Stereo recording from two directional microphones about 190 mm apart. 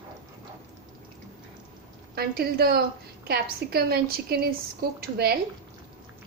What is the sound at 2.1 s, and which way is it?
A woman's voice, 55° right (ahead or behind).